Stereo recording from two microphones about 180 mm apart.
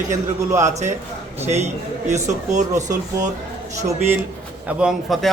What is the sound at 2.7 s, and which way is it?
Speech, 20° right (ahead or behind).